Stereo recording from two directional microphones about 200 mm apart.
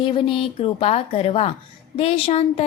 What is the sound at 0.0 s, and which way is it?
A woman's voice, 25° left (ahead or behind).